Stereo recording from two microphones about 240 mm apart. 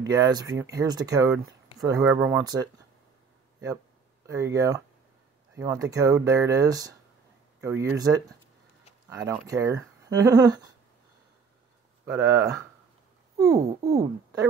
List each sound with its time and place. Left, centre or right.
0.1 s speech: centre
4.3 s speech: centre
9.2 s speech: centre
12.1 s speech: centre